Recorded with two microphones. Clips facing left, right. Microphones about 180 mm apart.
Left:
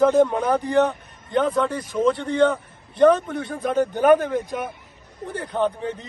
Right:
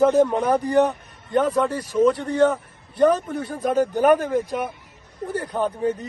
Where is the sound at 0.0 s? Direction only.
5° right (ahead or behind).